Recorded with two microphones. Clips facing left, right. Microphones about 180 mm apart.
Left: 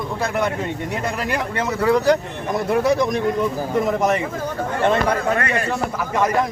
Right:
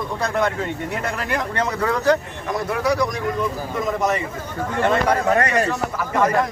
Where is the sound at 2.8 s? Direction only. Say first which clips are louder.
Right 1 dB; 25° left (ahead or behind).